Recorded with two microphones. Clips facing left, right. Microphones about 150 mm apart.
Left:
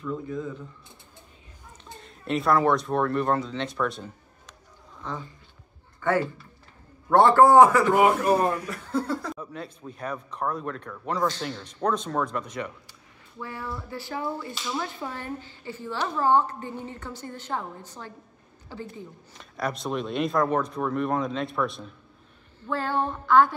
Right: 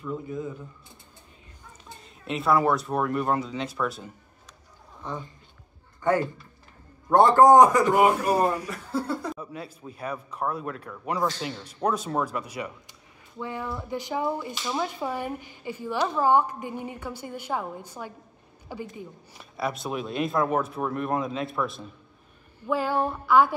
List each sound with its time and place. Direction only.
0.0 s speech: 15° right (ahead or behind)
2.2 s speech: centre (ahead or behind)
7.1 s speech: 15° right (ahead or behind)